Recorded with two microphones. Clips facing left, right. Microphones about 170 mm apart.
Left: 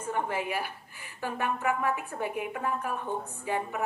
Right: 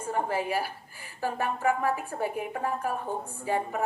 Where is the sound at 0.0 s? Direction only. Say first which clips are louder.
Right 2 dB; 35° right (ahead or behind).